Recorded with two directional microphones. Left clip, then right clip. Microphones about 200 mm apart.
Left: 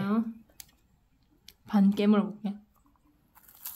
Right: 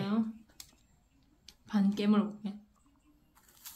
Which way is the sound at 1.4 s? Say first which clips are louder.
Left 6 dB; 60° left (ahead or behind).